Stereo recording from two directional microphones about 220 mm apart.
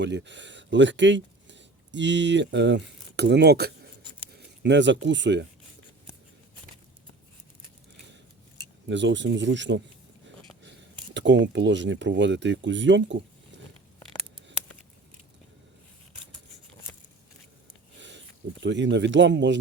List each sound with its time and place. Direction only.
0.0 s speech: 55° right (ahead or behind)
8.9 s speech: 55° right (ahead or behind)
13.5 s a sound: 55° right (ahead or behind)
18.6 s speech: 55° right (ahead or behind)